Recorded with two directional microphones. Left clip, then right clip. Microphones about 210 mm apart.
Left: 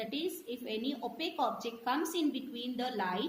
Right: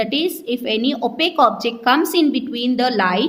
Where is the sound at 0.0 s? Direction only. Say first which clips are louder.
Right 17 dB; 45° right (ahead or behind).